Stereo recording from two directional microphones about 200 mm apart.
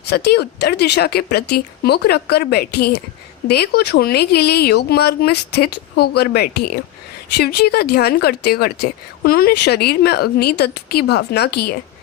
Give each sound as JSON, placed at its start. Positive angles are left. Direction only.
{"t": 0.1, "sound": "speech", "side_deg": 55}